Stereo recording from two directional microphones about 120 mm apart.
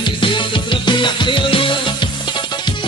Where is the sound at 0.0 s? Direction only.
40° left (ahead or behind).